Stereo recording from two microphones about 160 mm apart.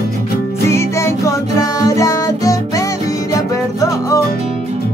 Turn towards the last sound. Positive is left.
turn(degrees=20)  # may be behind; listen again after turning